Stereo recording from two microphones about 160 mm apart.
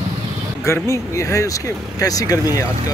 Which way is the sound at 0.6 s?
15° left (ahead or behind).